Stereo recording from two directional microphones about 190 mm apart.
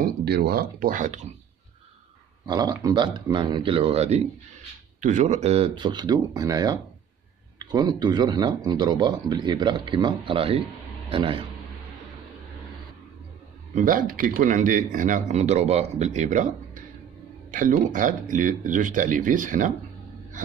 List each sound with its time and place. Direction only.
0.0 s speech: 55° right (ahead or behind)
2.4 s speech: 20° right (ahead or behind)
13.7 s speech: 45° right (ahead or behind)